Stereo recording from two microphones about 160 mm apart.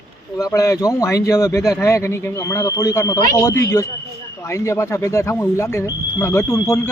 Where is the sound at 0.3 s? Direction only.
20° left (ahead or behind).